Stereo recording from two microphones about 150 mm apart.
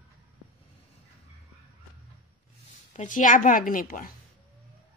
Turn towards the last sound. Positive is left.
turn(degrees=65)  # may be behind; listen again after turning